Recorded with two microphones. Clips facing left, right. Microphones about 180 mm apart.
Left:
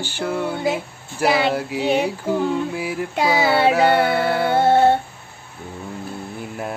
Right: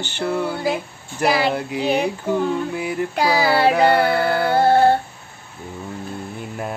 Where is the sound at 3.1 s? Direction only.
25° left (ahead or behind).